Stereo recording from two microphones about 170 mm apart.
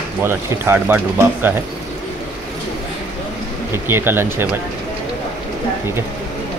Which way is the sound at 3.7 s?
15° right (ahead or behind).